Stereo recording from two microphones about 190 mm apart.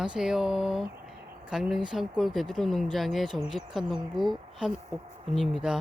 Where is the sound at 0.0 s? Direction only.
5° right (ahead or behind).